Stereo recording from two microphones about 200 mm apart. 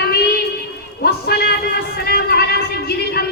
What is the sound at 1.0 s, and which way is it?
Music, 55° left (ahead or behind).